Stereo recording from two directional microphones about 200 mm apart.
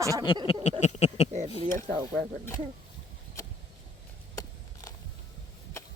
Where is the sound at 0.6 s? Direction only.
35° left (ahead or behind).